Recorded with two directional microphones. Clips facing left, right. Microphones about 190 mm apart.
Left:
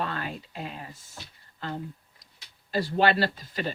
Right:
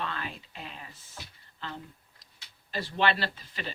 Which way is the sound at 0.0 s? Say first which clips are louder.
Left 4 dB; 45° left (ahead or behind).